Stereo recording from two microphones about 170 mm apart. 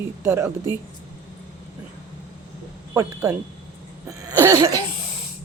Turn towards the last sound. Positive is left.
turn(degrees=-20)  # may be behind; listen again after turning